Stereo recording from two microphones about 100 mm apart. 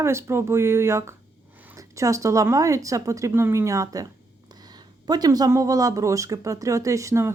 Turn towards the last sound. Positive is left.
turn(degrees=-30)  # may be behind; listen again after turning